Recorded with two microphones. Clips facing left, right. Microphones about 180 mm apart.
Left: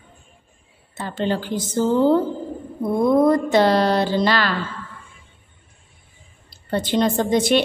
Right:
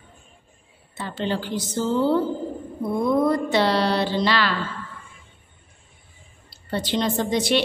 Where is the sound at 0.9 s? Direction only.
45° left (ahead or behind).